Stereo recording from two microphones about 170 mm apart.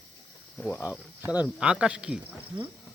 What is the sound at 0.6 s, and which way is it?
Speech, 5° left (ahead or behind).